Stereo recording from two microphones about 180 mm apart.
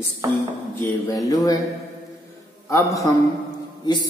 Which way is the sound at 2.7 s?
15° left (ahead or behind).